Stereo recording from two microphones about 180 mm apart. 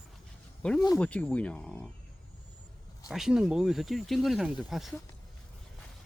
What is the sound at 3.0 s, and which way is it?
Speech, 5° right (ahead or behind).